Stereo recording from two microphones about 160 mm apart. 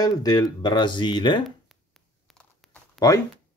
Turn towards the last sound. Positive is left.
turn(degrees=0)  # may be behind; listen again after turning